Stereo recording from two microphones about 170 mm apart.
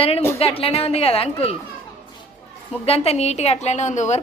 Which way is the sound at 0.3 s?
35° left (ahead or behind).